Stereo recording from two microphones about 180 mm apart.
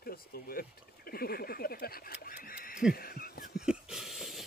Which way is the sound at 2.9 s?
55° left (ahead or behind).